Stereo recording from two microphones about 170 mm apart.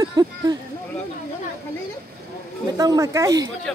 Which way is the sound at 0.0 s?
20° right (ahead or behind).